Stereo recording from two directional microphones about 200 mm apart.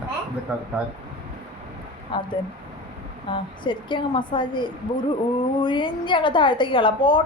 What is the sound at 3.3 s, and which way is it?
A woman's voice, 25° left (ahead or behind).